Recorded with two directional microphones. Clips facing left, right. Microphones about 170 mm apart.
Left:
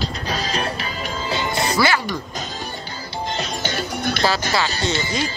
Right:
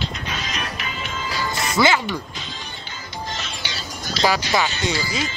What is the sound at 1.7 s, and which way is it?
Speech, 20° right (ahead or behind).